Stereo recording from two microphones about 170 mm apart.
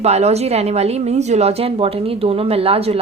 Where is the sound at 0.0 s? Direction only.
40° right (ahead or behind).